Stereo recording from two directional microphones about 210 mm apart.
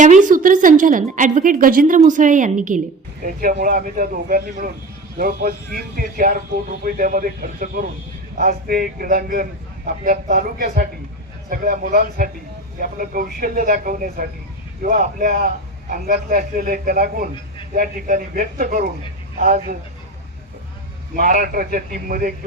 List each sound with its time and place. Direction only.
0.0 s a woman's voice: 35° right (ahead or behind)
21.2 s a woman's voice: 40° right (ahead or behind)